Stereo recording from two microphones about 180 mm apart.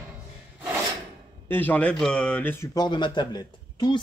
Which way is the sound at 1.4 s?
10° left (ahead or behind).